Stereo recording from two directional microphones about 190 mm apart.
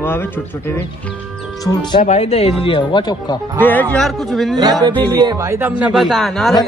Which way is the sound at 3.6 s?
10° left (ahead or behind).